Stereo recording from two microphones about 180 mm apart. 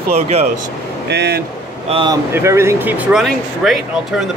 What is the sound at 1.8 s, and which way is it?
Speech, 30° right (ahead or behind).